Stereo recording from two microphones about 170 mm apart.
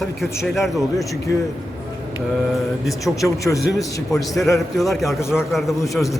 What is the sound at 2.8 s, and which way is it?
Speech, centre (ahead or behind).